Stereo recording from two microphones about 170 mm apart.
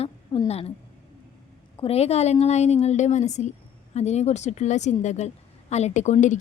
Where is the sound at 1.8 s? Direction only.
35° left (ahead or behind).